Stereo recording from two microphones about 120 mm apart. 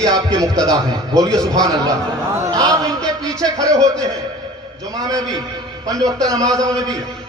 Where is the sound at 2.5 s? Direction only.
30° right (ahead or behind).